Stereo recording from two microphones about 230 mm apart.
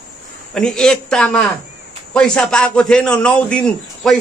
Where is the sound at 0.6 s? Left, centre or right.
Centre.